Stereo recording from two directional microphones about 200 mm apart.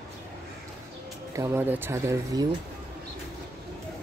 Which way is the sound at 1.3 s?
15° right (ahead or behind).